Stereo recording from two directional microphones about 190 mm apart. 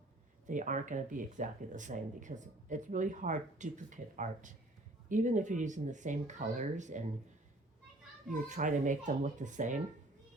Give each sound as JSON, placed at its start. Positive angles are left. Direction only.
{"t": 0.4, "sound": "speech", "side_deg": -40}
{"t": 8.3, "sound": "speech", "side_deg": -40}